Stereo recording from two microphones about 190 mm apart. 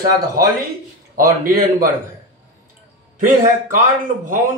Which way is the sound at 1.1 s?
50° right (ahead or behind).